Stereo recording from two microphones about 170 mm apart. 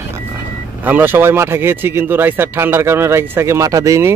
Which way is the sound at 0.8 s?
10° right (ahead or behind).